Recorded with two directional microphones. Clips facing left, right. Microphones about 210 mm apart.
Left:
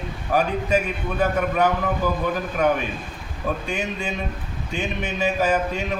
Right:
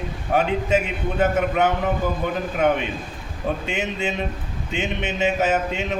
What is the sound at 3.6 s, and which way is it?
A man's voice, 25° right (ahead or behind).